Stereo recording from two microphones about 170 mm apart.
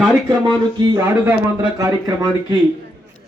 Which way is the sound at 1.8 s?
20° right (ahead or behind).